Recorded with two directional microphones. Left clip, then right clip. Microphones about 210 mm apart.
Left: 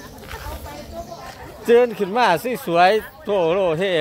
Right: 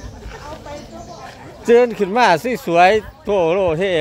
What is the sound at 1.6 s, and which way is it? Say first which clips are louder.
Speech: right 2 dB; 20° right (ahead or behind).